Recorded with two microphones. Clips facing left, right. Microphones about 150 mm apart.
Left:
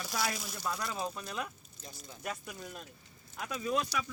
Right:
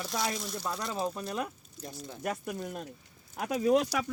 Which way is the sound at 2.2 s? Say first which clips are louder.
Right 7 dB; 50° right (ahead or behind).